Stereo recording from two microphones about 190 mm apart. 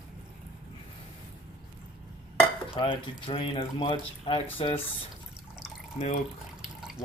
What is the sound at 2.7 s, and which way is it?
Speech, 25° left (ahead or behind).